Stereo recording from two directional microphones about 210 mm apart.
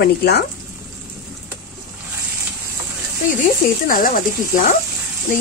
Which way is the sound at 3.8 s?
40° left (ahead or behind).